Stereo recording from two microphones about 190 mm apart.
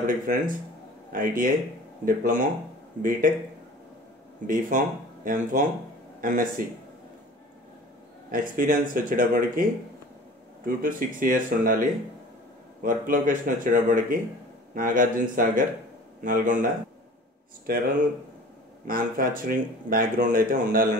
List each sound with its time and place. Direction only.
0.0 s speech: 45° right (ahead or behind)
4.5 s speech: 45° right (ahead or behind)
8.3 s speech: 45° right (ahead or behind)
12.8 s speech: 45° right (ahead or behind)
17.7 s speech: 50° right (ahead or behind)
18.9 s speech: 45° right (ahead or behind)